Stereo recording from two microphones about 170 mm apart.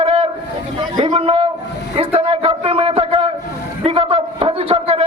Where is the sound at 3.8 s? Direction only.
35° right (ahead or behind).